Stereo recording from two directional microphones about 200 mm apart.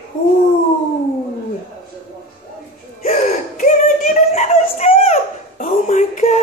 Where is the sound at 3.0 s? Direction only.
35° left (ahead or behind).